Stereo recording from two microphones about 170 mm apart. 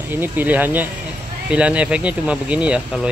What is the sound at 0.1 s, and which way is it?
Speech, 10° right (ahead or behind).